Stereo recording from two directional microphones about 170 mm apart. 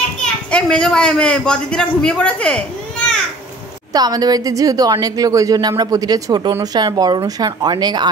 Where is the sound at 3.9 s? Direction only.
20° right (ahead or behind).